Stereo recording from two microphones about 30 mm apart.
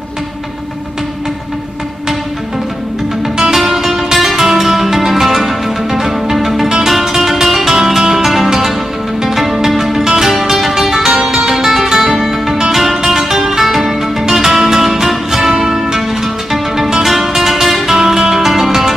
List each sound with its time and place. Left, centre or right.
3.5 s music: centre
10.0 s music: centre